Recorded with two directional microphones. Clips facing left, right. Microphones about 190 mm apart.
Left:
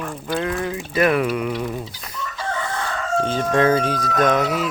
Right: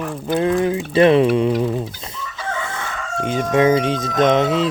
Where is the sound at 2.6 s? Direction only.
15° right (ahead or behind).